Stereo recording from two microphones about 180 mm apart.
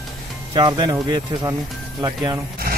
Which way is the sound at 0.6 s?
25° right (ahead or behind).